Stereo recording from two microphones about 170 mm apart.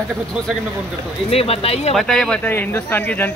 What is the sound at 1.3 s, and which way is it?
Speech, 35° left (ahead or behind).